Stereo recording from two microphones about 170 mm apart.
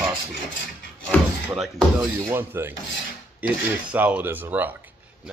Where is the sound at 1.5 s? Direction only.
5° right (ahead or behind).